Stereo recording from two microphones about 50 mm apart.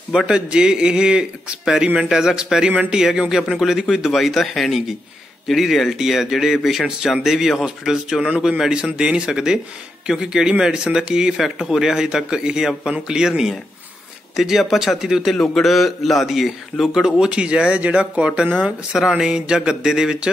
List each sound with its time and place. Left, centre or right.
0.3 s a man's voice: centre
15.3 s a man's voice: centre
17.2 s speech: right
18.9 s speech: centre